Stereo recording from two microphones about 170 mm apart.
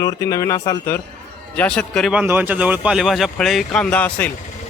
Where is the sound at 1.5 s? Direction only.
5° left (ahead or behind).